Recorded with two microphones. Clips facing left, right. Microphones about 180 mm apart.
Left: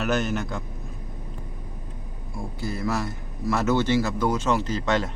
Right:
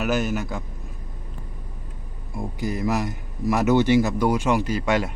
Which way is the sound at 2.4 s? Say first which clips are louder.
Right 3 dB; 15° right (ahead or behind).